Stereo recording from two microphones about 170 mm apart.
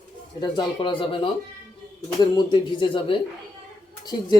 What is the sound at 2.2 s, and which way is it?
Speech, 25° left (ahead or behind).